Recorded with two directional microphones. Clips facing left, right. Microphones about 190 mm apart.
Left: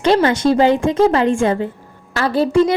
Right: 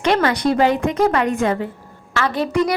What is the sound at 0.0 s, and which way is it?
A woman's voice, 30° left (ahead or behind).